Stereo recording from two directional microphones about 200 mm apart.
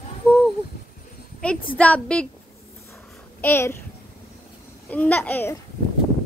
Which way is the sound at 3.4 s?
10° left (ahead or behind).